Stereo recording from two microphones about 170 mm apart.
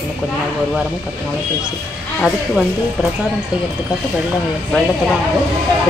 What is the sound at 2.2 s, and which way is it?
Speech, centre (ahead or behind).